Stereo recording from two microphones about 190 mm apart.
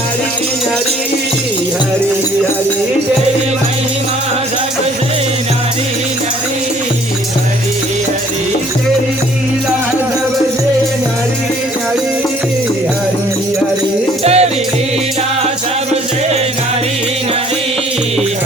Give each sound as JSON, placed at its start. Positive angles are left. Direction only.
{"t": 14.3, "sound": "music", "side_deg": -35}